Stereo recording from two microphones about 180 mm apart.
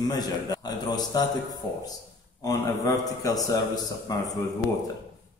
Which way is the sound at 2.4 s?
20° left (ahead or behind).